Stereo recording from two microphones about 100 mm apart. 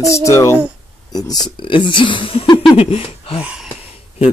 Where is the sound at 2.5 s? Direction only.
75° left (ahead or behind).